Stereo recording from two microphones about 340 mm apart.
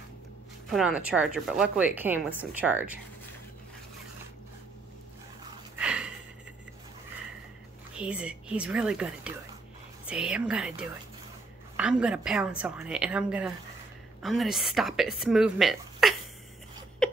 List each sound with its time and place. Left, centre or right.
0.7 s speech: centre
5.8 s a sound: centre
7.9 s speech: centre